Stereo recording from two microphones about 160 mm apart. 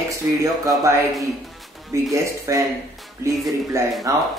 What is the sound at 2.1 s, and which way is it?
Speech, 20° right (ahead or behind).